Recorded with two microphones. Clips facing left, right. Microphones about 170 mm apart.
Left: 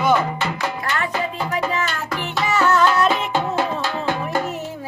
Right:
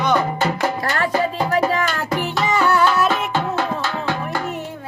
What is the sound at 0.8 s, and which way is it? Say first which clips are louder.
Music: right 3 dB; 35° right (ahead or behind).